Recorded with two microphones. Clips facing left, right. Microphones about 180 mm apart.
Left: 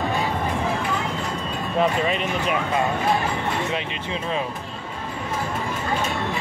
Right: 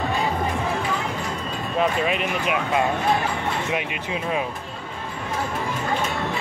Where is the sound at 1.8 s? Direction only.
5° right (ahead or behind).